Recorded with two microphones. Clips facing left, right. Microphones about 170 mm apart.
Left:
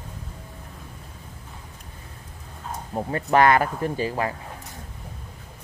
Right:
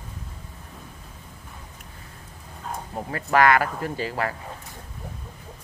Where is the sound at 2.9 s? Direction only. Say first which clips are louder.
Left 2 dB; 25° left (ahead or behind).